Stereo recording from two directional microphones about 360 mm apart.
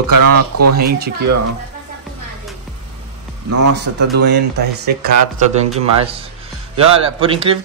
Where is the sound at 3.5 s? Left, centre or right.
Right.